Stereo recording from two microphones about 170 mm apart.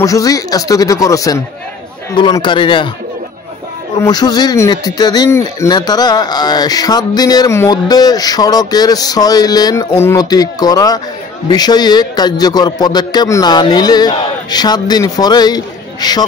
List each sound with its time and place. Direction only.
0.0 s speech: 20° left (ahead or behind)
4.0 s speech: 25° left (ahead or behind)